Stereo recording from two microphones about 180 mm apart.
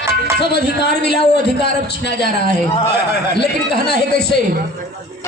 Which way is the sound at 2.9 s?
65° left (ahead or behind).